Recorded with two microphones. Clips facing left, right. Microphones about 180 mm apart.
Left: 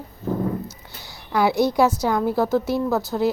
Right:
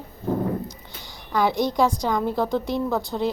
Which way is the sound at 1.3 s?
10° left (ahead or behind).